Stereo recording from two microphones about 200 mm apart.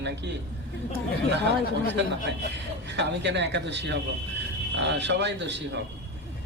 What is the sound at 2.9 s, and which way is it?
A man's voice, 60° right (ahead or behind).